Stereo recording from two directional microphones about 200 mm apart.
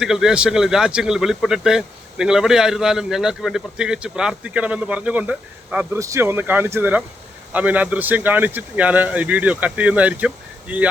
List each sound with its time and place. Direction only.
0.0 s speech: 5° right (ahead or behind)